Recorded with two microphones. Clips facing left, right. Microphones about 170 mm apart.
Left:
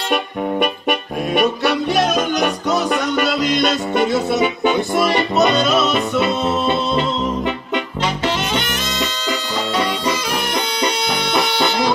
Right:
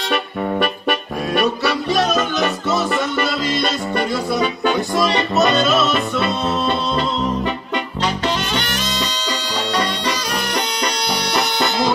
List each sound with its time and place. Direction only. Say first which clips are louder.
2.0 s music: left 1 dB; 15° left (ahead or behind)
7.4 s music: left 1 dB; 20° left (ahead or behind)
10.0 s bagpipes: left 2 dB; 25° left (ahead or behind)